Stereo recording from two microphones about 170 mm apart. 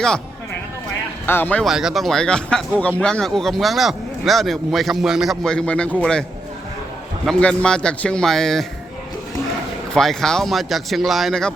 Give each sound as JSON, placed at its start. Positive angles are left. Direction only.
{"t": 1.3, "sound": "speech", "side_deg": 10}
{"t": 1.6, "sound": "speech", "side_deg": 0}
{"t": 7.3, "sound": "speech", "side_deg": 5}
{"t": 9.9, "sound": "speech", "side_deg": 0}